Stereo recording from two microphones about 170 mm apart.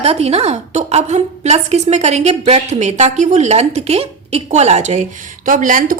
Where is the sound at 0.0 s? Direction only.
35° right (ahead or behind).